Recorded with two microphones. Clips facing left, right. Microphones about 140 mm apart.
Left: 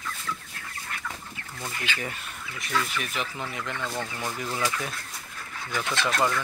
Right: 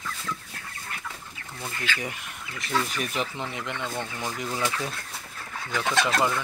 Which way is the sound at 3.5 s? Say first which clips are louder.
Even; 20° right (ahead or behind).